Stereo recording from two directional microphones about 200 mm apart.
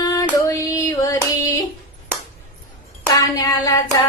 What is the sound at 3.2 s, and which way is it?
Child singing, 15° left (ahead or behind).